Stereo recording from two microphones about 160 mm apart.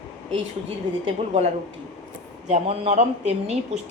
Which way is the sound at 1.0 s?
40° right (ahead or behind).